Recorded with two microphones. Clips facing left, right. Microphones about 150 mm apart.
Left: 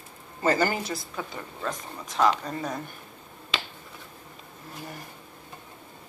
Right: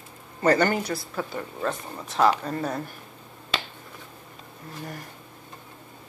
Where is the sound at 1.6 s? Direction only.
30° right (ahead or behind).